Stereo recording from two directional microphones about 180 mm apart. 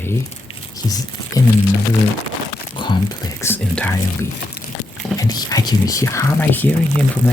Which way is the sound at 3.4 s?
10° left (ahead or behind).